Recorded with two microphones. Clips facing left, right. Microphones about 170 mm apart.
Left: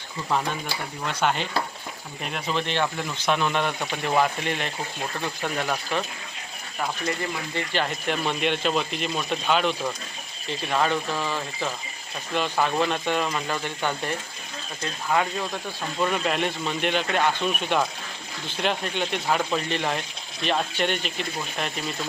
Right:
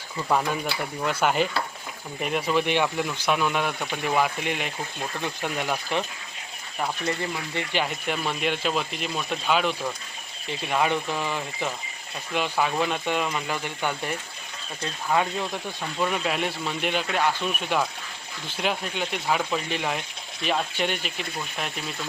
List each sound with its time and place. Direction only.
1.0 s speech: 5° right (ahead or behind)
7.5 s speech: 15° right (ahead or behind)
16.0 s speech: 5° right (ahead or behind)